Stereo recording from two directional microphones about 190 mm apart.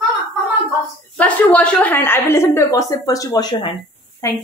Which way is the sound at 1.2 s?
10° left (ahead or behind).